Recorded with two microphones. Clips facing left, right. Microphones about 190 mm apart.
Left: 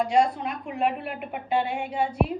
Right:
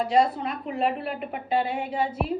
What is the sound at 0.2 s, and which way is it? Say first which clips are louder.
Speech: right 1 dB; 5° right (ahead or behind).